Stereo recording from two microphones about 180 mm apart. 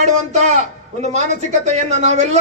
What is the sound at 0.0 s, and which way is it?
Speech, 40° right (ahead or behind).